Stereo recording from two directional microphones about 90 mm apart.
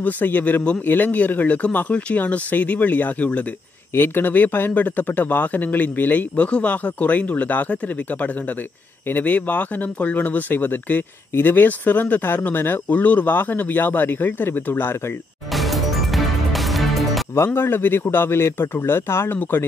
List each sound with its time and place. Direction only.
0.0 s speech: 20° left (ahead or behind)
15.5 s music: centre (ahead or behind)
17.6 s speech: 25° left (ahead or behind)